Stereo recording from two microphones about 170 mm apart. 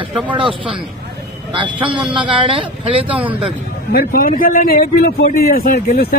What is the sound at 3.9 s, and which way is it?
Speech, 60° left (ahead or behind).